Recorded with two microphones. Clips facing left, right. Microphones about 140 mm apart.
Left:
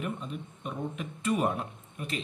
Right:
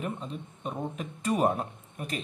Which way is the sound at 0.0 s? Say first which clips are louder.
Even; 35° right (ahead or behind).